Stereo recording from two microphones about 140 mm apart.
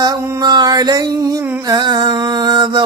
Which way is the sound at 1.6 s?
30° right (ahead or behind).